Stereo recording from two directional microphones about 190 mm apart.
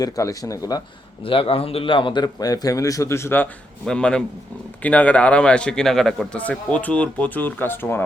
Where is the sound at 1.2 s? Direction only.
30° left (ahead or behind).